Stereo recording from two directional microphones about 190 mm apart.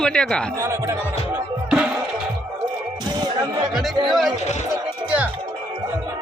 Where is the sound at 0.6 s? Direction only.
15° right (ahead or behind).